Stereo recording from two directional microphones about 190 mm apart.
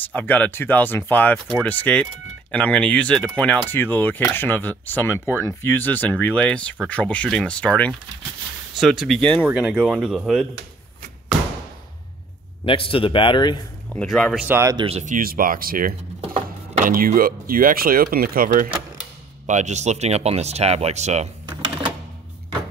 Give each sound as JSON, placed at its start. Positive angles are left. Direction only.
{"t": 0.1, "sound": "speech", "side_deg": 10}
{"t": 12.6, "sound": "a man's voice", "side_deg": 30}
{"t": 13.8, "sound": "speech", "side_deg": 0}
{"t": 14.5, "sound": "speech", "side_deg": -15}
{"t": 14.9, "sound": "speech", "side_deg": -40}
{"t": 16.2, "sound": "a sound", "side_deg": -30}
{"t": 16.8, "sound": "speech", "side_deg": -45}
{"t": 21.5, "sound": "cash register", "side_deg": -25}